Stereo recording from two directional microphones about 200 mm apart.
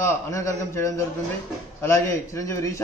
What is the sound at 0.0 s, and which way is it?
A man's voice, 15° left (ahead or behind).